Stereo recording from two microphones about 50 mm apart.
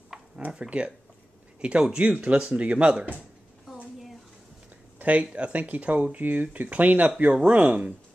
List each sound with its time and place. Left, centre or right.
0.1 s a sound: centre
0.5 s speech: right
4.9 s speech: right